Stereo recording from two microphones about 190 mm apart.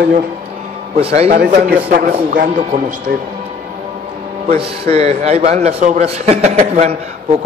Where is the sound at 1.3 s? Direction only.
50° right (ahead or behind).